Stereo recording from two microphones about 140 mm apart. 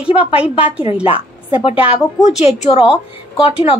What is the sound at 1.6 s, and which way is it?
A woman's voice, 45° left (ahead or behind).